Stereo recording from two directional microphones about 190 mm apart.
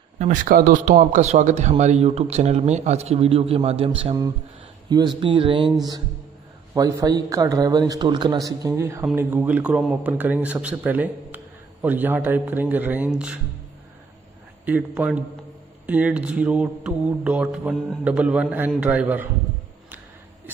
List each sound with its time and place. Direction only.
0.2 s a man's voice: 45° right (ahead or behind); by 13.4 s 5° right (ahead or behind)
14.6 s speech: 10° right (ahead or behind)